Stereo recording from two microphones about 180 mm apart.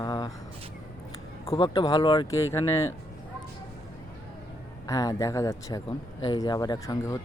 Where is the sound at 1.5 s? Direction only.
25° left (ahead or behind).